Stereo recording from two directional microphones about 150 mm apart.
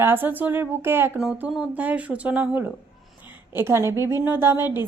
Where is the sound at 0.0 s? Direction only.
15° right (ahead or behind).